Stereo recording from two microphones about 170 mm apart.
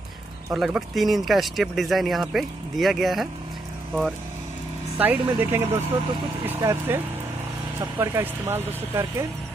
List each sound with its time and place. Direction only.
0.5 s speech: 5° right (ahead or behind)
4.9 s speech: 10° right (ahead or behind)